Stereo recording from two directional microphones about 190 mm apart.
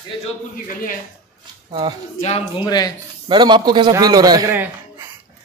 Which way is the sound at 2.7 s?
20° left (ahead or behind).